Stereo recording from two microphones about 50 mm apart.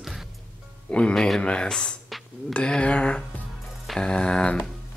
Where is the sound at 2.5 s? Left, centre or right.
Left.